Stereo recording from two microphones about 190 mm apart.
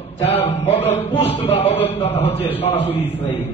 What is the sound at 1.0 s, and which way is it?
A man's voice, 30° left (ahead or behind).